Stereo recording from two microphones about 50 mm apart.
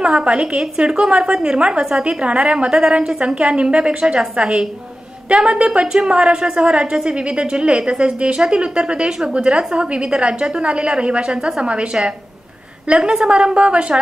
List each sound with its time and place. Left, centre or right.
0.0 s a woman's voice: centre